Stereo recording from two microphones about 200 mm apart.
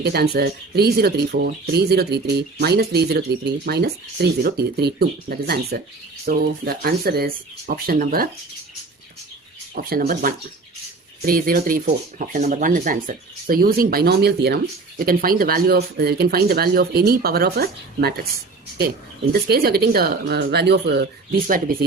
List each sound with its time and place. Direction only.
0.0 s speech: 50° right (ahead or behind)
9.7 s speech: 45° right (ahead or behind)